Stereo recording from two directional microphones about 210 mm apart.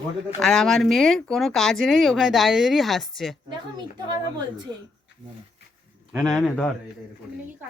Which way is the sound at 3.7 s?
20° right (ahead or behind).